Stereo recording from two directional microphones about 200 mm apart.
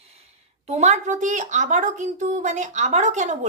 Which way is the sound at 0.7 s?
35° right (ahead or behind).